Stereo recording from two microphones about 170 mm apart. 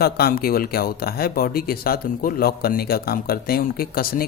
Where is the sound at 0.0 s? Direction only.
65° left (ahead or behind).